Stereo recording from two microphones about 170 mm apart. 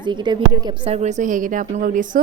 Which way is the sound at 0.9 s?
45° right (ahead or behind).